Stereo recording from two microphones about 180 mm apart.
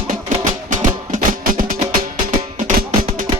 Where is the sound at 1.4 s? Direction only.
50° right (ahead or behind).